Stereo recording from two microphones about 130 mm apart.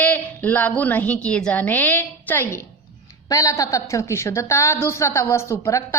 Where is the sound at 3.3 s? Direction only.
25° left (ahead or behind).